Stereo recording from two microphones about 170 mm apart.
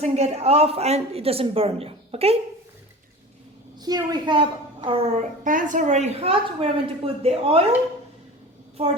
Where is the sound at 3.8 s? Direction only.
25° right (ahead or behind).